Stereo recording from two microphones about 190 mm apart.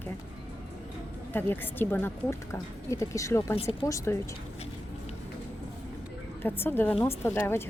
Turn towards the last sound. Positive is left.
turn(degrees=10)  # may be behind; listen again after turning